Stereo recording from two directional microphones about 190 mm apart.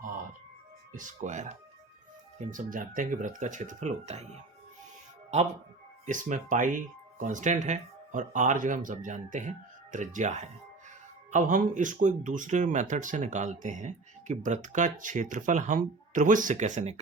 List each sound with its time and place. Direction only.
0.9 s speech: 40° right (ahead or behind)
6.1 s speech: 40° right (ahead or behind)